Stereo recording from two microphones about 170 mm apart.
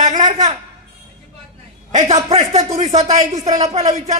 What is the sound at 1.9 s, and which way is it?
Speech, 40° right (ahead or behind).